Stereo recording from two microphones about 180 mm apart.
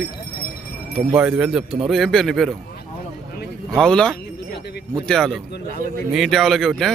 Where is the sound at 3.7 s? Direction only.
5° left (ahead or behind).